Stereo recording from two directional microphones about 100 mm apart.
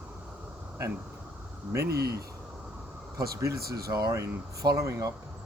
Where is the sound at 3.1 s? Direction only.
35° right (ahead or behind).